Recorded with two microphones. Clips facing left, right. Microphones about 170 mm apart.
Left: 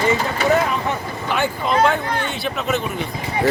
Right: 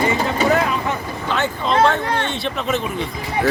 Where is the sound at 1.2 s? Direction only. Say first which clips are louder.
Even; 10° left (ahead or behind).